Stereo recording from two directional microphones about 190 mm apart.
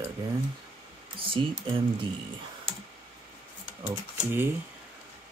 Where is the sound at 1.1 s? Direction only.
25° right (ahead or behind).